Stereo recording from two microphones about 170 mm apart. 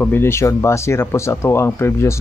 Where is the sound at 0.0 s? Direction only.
15° left (ahead or behind).